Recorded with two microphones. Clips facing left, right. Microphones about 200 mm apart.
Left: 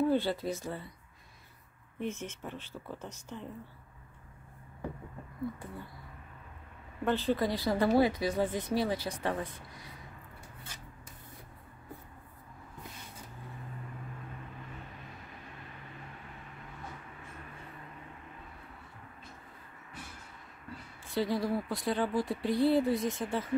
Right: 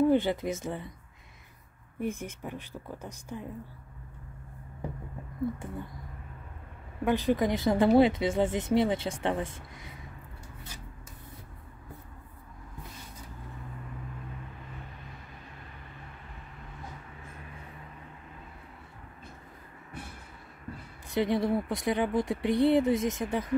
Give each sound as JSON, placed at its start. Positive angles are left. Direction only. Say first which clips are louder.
{"t": 0.0, "sound": "speech", "louder": "right 4 dB", "side_deg": -15}
{"t": 2.0, "sound": "speech", "louder": "right 3 dB", "side_deg": -10}
{"t": 7.1, "sound": "speech", "louder": "right 3 dB", "side_deg": -15}
{"t": 21.1, "sound": "speech", "louder": "right 4 dB", "side_deg": -20}